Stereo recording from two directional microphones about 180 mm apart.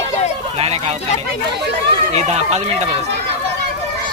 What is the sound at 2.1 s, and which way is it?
Speech, 35° right (ahead or behind).